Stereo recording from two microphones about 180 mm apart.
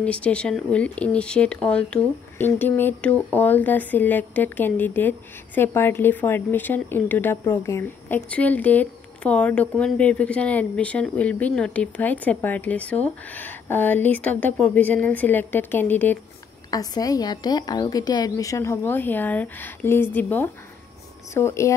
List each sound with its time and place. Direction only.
0.0 s a woman's voice: 5° left (ahead or behind)